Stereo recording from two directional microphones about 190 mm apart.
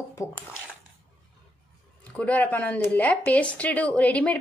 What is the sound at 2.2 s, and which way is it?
Speech, 10° left (ahead or behind).